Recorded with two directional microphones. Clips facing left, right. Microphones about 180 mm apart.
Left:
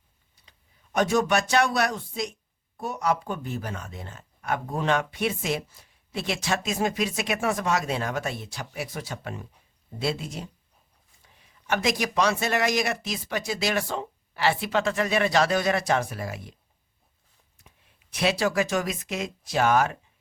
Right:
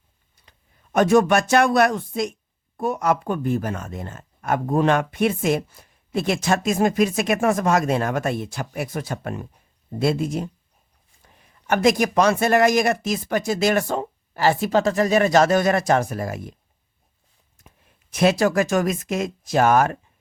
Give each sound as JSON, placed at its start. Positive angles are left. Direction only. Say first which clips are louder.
{"t": 0.9, "sound": "speech", "louder": "right 6 dB", "side_deg": -55}
{"t": 17.6, "sound": "speech", "louder": "right 5 dB", "side_deg": -50}